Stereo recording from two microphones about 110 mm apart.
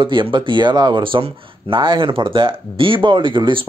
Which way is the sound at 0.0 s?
50° right (ahead or behind).